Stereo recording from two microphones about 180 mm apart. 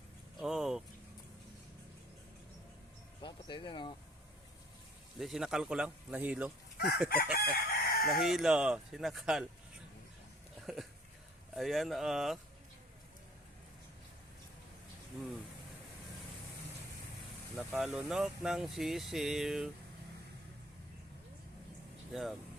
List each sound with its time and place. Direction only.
0.3 s vehicle: centre (ahead or behind)
3.2 s a sound: 25° left (ahead or behind)
5.2 s speech: centre (ahead or behind)
6.7 s chicken: 60° left (ahead or behind)
8.1 s speech: centre (ahead or behind)
10.7 s speech: centre (ahead or behind)
17.6 s speech: 5° right (ahead or behind)
22.1 s speech: centre (ahead or behind)